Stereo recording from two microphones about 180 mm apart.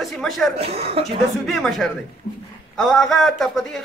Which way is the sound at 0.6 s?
35° right (ahead or behind).